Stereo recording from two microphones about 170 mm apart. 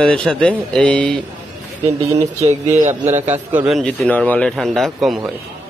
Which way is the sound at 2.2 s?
40° right (ahead or behind).